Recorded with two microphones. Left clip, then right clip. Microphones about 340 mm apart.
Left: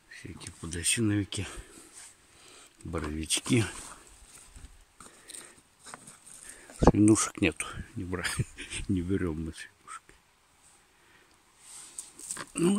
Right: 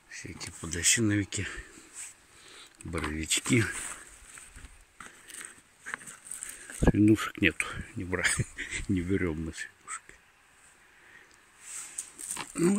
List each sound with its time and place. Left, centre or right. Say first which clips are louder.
0.1 s speech: right 4 dB; centre
2.9 s speech: right 1 dB; centre
6.8 s a sound: left 3 dB; left
7.1 s speech: even; centre